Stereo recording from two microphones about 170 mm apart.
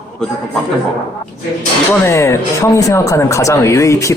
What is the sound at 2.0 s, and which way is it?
Speech, 15° left (ahead or behind).